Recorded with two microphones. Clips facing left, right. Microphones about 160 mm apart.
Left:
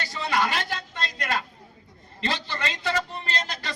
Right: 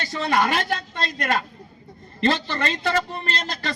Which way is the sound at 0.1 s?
40° right (ahead or behind).